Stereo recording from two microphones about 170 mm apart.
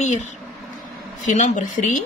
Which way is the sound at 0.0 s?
45° left (ahead or behind).